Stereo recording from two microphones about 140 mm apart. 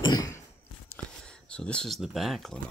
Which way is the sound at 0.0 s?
25° left (ahead or behind).